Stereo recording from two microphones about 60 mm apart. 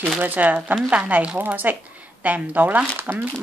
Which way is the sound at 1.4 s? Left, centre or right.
Right.